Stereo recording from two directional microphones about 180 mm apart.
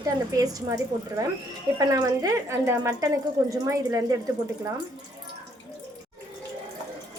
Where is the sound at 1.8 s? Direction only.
20° right (ahead or behind).